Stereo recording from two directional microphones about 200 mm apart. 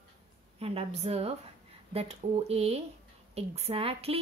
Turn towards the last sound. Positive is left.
turn(degrees=-30)  # may be behind; listen again after turning